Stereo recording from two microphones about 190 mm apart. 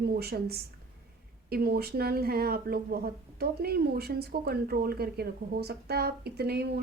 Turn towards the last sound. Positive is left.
turn(degrees=-60)  # may be behind; listen again after turning